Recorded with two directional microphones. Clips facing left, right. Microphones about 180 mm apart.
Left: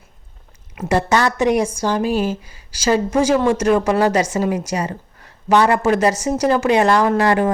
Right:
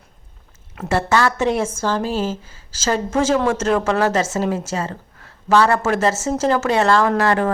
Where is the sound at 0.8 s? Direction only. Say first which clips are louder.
Left 1 dB; 15° left (ahead or behind).